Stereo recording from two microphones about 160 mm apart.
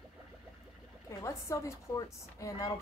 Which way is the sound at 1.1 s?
20° left (ahead or behind).